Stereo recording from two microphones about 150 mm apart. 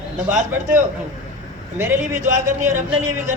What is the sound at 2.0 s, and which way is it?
Speech, 60° right (ahead or behind).